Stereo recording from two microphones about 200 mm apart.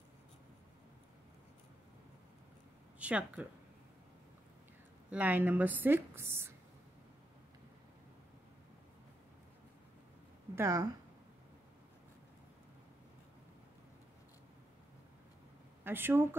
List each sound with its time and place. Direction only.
3.0 s speech: 5° right (ahead or behind)
5.1 s a woman's voice: 10° right (ahead or behind)
10.5 s a woman's voice: 15° right (ahead or behind)
15.8 s a woman's voice: 10° right (ahead or behind)